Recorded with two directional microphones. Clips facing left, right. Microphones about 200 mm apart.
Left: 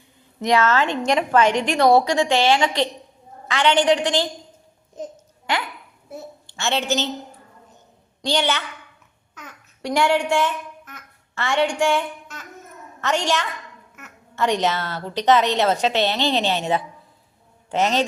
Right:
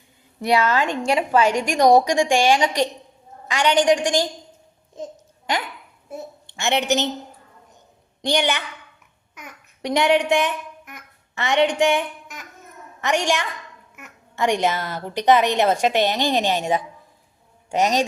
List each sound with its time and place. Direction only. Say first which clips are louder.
0.4 s a woman's voice: left 1 dB; 15° right (ahead or behind)
6.6 s a woman's voice: right 2 dB; 15° right (ahead or behind)
8.2 s a woman's voice: right 1 dB; 15° right (ahead or behind)